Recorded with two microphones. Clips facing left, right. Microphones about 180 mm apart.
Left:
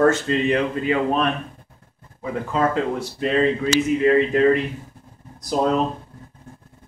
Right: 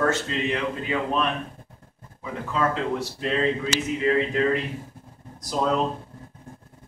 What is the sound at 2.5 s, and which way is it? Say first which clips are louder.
Speech: left 3 dB; 50° left (ahead or behind).